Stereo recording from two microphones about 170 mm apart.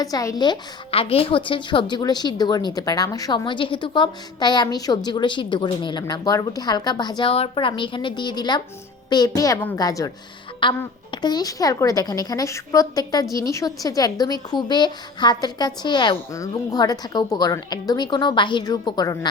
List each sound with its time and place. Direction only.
0.0 s a woman's voice: 20° left (ahead or behind)